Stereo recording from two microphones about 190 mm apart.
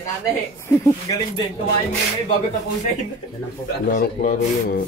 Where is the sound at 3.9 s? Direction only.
45° left (ahead or behind).